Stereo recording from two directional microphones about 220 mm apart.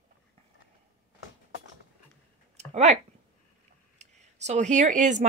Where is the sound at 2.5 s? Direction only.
30° right (ahead or behind).